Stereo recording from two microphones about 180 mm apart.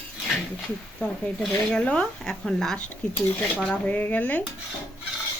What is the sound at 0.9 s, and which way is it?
A woman's voice, 5° left (ahead or behind).